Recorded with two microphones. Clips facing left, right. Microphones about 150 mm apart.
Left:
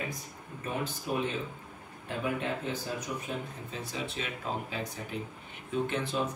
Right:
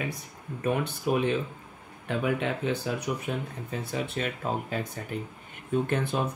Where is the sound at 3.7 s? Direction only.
55° right (ahead or behind).